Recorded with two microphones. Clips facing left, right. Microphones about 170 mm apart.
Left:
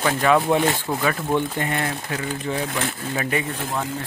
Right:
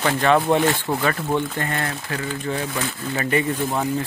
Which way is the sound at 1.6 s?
15° left (ahead or behind).